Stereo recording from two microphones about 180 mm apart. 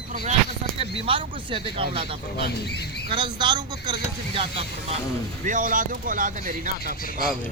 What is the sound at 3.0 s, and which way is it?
Speech, 25° right (ahead or behind).